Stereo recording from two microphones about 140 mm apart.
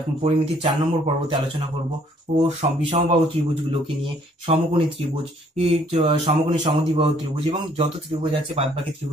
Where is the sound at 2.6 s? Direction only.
40° right (ahead or behind).